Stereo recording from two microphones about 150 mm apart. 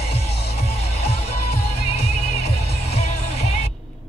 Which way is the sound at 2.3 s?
45° left (ahead or behind).